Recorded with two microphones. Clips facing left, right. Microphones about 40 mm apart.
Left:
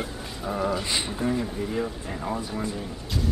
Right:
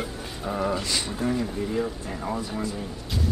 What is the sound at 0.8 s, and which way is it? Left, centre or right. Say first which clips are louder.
Speech: even; left.